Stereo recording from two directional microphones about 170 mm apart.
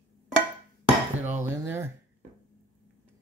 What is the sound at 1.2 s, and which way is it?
Dishes, 15° right (ahead or behind).